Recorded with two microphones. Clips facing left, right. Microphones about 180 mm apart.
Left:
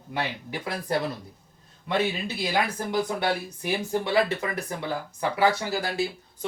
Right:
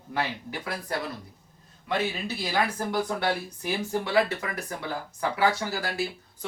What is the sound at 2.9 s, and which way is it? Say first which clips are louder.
Speech: left 1 dB; 15° left (ahead or behind).